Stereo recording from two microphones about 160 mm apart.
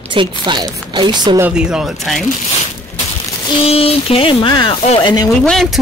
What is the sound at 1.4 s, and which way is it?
Speech, 5° right (ahead or behind).